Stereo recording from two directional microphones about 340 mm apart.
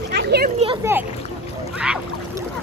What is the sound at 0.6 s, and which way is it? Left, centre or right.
Speech, centre.